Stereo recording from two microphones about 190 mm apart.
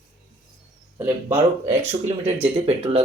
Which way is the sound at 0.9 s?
10° right (ahead or behind).